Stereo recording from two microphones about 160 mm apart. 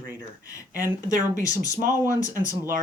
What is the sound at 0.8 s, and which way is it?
Speech, 55° right (ahead or behind).